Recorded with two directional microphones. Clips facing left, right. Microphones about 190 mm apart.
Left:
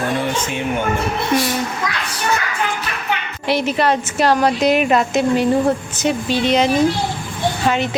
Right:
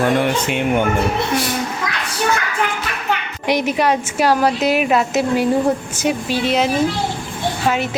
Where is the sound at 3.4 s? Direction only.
15° right (ahead or behind).